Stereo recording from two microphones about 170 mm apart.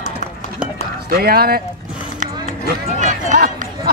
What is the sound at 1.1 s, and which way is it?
Speech, 65° right (ahead or behind).